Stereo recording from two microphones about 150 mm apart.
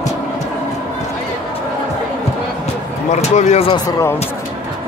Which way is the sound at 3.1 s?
50° left (ahead or behind).